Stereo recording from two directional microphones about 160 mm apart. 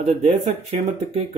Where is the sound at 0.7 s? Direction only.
40° right (ahead or behind).